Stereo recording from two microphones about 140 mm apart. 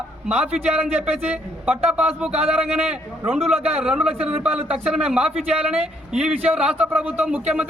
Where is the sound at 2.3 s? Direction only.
50° right (ahead or behind).